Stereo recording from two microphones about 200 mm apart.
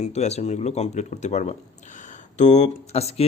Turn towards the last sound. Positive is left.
turn(degrees=30)  # may be behind; listen again after turning